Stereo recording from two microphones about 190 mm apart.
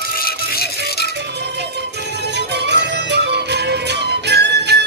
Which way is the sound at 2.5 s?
65° right (ahead or behind).